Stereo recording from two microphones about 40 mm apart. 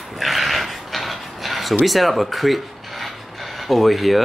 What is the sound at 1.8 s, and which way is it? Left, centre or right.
Speech, centre.